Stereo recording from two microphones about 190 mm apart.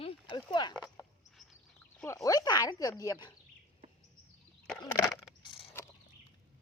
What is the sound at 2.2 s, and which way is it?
A woman's voice, 20° left (ahead or behind).